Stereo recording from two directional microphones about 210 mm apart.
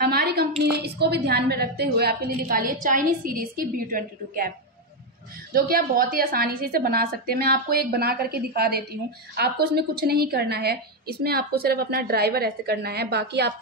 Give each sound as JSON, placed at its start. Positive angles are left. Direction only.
{"t": 0.0, "sound": "a sound", "side_deg": -50}
{"t": 0.7, "sound": "a woman's voice", "side_deg": -50}
{"t": 5.5, "sound": "a woman's voice", "side_deg": -45}